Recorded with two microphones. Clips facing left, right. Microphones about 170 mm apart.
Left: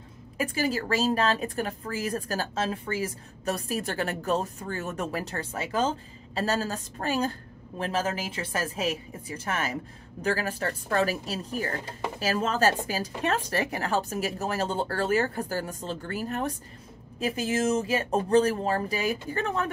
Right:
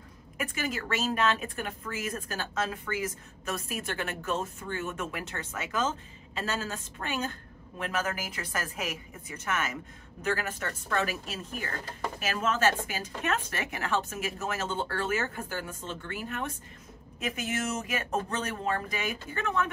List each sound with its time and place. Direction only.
0.4 s a woman's voice: 35° left (ahead or behind)